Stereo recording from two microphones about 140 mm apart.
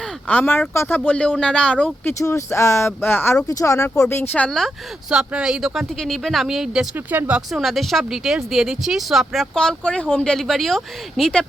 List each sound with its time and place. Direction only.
0.0 s speech: 10° left (ahead or behind)
2.1 s speech: 20° left (ahead or behind); by 6.8 s 5° right (ahead or behind)
6.9 s speech: 15° right (ahead or behind); by 11.4 s 5° left (ahead or behind)